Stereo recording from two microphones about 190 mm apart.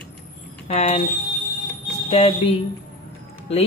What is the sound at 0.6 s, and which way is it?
Speech, 30° left (ahead or behind).